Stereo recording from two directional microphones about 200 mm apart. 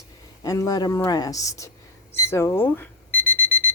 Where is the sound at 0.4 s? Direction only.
15° left (ahead or behind).